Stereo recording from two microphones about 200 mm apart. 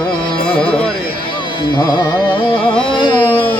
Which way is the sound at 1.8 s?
20° left (ahead or behind).